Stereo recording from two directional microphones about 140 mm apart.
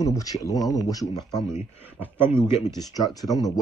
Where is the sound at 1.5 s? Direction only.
15° right (ahead or behind).